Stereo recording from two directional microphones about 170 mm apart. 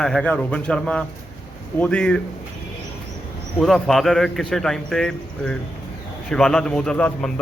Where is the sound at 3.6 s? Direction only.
Centre (ahead or behind).